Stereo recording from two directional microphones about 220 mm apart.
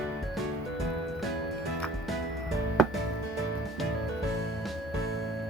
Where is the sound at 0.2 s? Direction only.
Centre (ahead or behind).